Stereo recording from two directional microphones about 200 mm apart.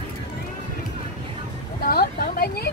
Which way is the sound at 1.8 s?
45° left (ahead or behind).